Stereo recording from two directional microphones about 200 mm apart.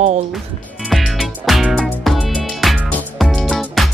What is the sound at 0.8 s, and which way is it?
Music, centre (ahead or behind).